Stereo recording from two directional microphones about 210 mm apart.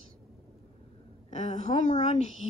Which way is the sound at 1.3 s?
35° left (ahead or behind).